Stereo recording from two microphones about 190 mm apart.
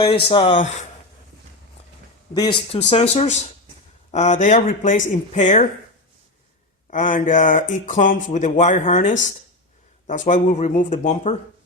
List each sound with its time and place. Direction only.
0.3 s speech: 30° left (ahead or behind)
2.3 s speech: 25° left (ahead or behind)
6.9 s speech: 40° left (ahead or behind)